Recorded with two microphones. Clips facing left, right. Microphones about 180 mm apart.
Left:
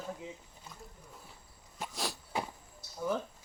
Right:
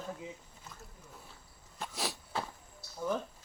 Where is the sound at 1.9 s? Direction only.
Centre (ahead or behind).